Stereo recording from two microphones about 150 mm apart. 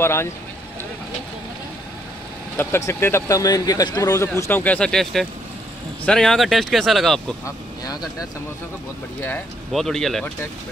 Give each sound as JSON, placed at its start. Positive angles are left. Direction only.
{"t": 0.0, "sound": "speech", "side_deg": 15}
{"t": 2.5, "sound": "speech", "side_deg": 15}
{"t": 7.4, "sound": "speech", "side_deg": 25}
{"t": 9.7, "sound": "speech", "side_deg": 0}